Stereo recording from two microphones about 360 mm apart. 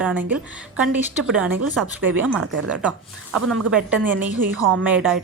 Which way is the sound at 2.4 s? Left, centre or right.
Right.